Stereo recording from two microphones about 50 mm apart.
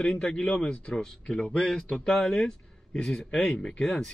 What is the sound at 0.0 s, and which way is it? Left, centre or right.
Speech, centre.